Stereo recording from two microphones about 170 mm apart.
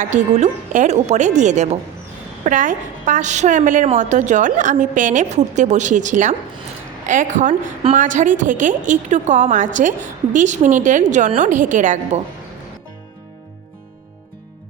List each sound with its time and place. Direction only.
0.0 s a woman's voice: 45° right (ahead or behind)